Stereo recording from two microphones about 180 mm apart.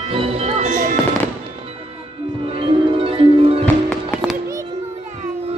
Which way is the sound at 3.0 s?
30° right (ahead or behind).